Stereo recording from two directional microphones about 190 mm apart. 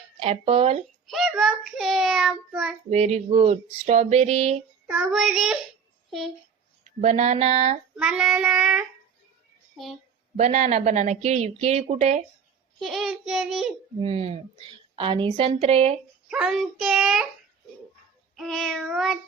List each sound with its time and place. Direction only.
0.2 s speech: 30° right (ahead or behind)
1.0 s a child's voice: centre (ahead or behind)
1.7 s child singing: centre (ahead or behind)
2.9 s speech: 35° right (ahead or behind)
4.9 s child singing: 5° right (ahead or behind)
6.1 s speech: centre (ahead or behind)
7.0 s speech: 35° right (ahead or behind)
7.9 s child singing: 5° right (ahead or behind)
10.3 s speech: 40° right (ahead or behind)
12.8 s child singing: centre (ahead or behind)
14.0 s a woman's voice: 30° right (ahead or behind)
16.3 s child singing: 5° right (ahead or behind)
18.3 s child singing: centre (ahead or behind)